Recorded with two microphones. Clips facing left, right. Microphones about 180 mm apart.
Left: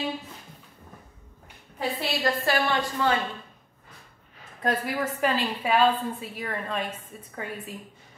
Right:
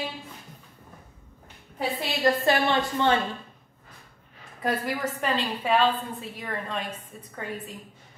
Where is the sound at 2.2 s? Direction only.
20° right (ahead or behind).